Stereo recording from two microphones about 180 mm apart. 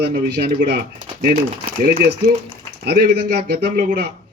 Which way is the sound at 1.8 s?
55° right (ahead or behind).